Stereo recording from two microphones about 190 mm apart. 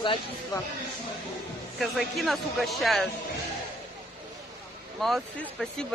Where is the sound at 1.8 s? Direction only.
Centre (ahead or behind).